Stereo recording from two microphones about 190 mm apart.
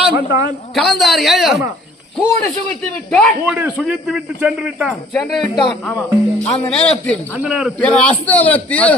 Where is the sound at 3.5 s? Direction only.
10° right (ahead or behind).